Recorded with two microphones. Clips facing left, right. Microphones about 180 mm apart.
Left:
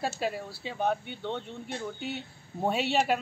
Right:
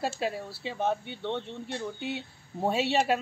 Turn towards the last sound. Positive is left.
turn(degrees=0)  # may be behind; listen again after turning